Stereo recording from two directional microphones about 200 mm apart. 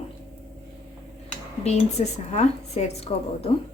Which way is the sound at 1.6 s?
35° left (ahead or behind).